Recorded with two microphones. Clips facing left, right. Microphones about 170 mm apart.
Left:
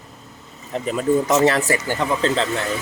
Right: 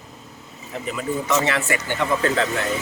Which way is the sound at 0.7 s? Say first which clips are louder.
Left 7 dB; 35° left (ahead or behind).